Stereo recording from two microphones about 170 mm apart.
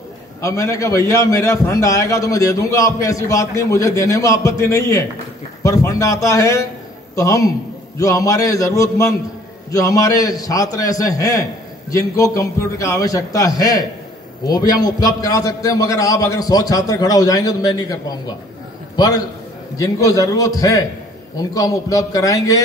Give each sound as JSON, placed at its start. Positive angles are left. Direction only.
{"t": 0.4, "sound": "a man's voice", "side_deg": 20}